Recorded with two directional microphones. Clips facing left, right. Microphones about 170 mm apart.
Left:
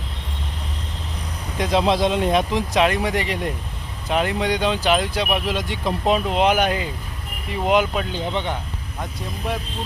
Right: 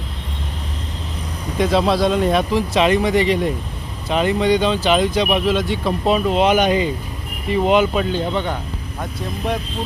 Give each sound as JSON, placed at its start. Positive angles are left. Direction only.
{"t": 1.5, "sound": "speech", "side_deg": 10}